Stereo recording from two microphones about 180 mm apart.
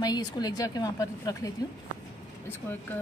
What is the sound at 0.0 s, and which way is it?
A woman's voice, 20° left (ahead or behind).